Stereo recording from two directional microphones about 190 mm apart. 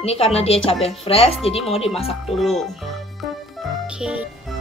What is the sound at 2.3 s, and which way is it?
Speech, centre (ahead or behind).